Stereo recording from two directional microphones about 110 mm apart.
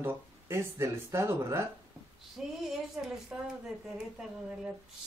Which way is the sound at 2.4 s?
5° right (ahead or behind).